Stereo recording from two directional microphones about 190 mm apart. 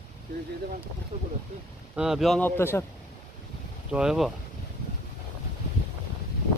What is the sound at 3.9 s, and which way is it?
Speech, 5° right (ahead or behind).